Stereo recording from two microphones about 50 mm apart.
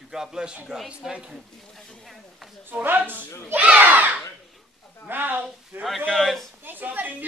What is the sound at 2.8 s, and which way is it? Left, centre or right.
Speech, right.